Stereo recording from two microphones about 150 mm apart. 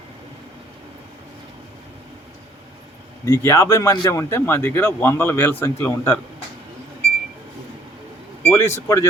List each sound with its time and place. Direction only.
3.2 s speech: 20° left (ahead or behind)
8.4 s speech: 20° left (ahead or behind)